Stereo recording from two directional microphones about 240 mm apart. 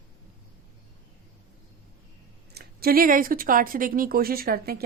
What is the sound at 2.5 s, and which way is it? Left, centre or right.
Speech, right.